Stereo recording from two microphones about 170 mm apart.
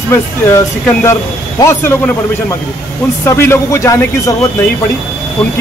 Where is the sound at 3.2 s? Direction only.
15° left (ahead or behind).